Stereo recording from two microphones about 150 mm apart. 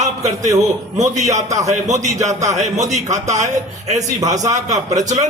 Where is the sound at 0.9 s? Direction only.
50° right (ahead or behind).